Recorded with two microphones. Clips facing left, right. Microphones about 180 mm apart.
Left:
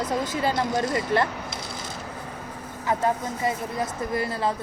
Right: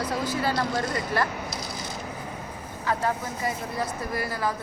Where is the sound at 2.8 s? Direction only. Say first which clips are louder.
Left 3 dB; 20° left (ahead or behind).